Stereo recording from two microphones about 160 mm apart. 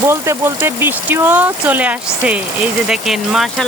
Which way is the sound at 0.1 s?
15° right (ahead or behind).